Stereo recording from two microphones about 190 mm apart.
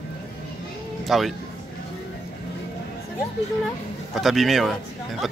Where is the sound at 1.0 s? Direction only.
Centre (ahead or behind).